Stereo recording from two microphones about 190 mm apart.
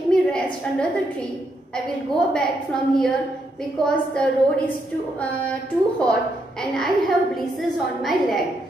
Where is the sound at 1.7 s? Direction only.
5° left (ahead or behind).